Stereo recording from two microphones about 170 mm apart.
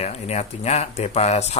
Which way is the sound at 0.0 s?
40° left (ahead or behind).